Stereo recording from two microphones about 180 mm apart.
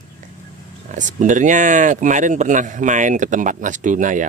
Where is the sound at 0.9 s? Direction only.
45° right (ahead or behind).